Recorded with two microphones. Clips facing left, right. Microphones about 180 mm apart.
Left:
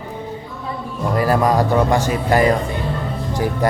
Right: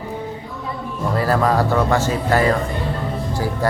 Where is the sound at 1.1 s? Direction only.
15° left (ahead or behind).